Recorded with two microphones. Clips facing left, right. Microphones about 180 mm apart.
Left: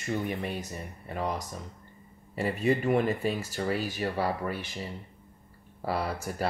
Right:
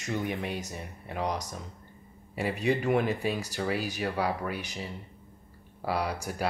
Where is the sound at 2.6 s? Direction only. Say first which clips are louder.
Left 1 dB; centre (ahead or behind).